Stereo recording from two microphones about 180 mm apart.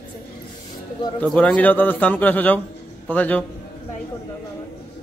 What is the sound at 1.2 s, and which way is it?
A man's voice, 5° left (ahead or behind).